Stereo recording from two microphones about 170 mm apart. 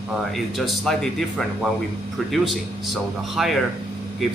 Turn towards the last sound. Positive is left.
turn(degrees=0)  # may be behind; listen again after turning